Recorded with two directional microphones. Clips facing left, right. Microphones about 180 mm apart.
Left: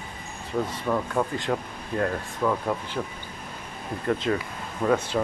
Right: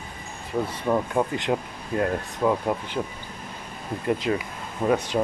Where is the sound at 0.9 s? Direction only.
20° right (ahead or behind).